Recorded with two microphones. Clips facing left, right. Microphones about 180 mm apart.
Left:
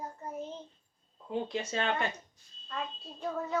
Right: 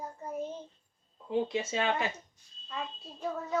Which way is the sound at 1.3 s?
Centre (ahead or behind).